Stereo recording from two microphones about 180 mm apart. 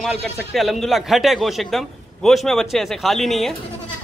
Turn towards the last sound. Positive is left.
turn(degrees=0)  # may be behind; listen again after turning